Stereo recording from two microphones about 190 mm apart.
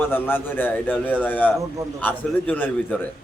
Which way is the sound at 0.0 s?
10° left (ahead or behind).